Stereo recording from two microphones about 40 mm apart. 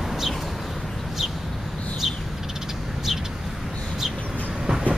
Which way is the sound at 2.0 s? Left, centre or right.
Centre.